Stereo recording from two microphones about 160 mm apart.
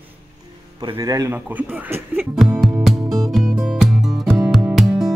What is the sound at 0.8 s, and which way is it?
Speech, 25° right (ahead or behind).